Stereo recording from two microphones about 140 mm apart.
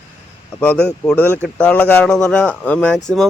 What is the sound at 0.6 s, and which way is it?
Speech, 10° left (ahead or behind).